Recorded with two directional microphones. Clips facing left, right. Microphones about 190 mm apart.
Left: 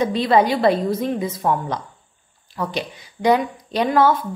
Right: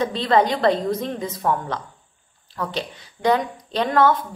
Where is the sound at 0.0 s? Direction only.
10° left (ahead or behind).